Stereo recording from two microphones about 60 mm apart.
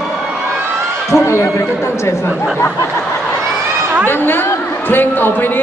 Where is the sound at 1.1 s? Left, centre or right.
Left.